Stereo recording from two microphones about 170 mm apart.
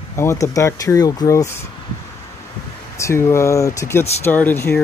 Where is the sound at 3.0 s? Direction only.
15° left (ahead or behind).